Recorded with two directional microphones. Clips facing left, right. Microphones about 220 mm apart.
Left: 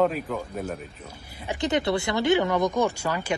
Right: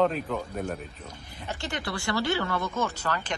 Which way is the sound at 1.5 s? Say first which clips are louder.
Left 9 dB; 20° left (ahead or behind).